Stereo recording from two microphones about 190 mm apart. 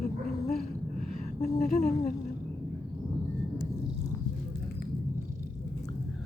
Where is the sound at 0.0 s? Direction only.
50° left (ahead or behind).